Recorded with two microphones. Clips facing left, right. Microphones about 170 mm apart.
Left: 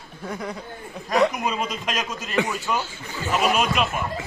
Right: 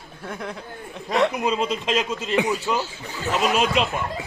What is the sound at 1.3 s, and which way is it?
A man's voice, 25° right (ahead or behind).